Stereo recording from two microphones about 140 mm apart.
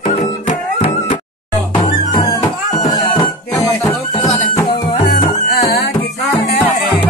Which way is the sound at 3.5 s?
25° left (ahead or behind).